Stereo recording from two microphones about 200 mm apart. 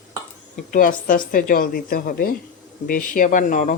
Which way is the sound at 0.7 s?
40° left (ahead or behind).